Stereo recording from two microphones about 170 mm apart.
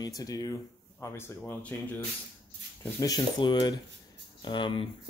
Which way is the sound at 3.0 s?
25° left (ahead or behind).